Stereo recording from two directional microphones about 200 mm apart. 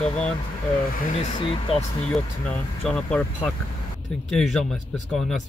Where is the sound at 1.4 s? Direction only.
25° left (ahead or behind).